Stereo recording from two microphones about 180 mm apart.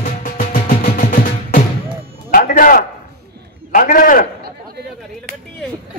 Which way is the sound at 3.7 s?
50° left (ahead or behind).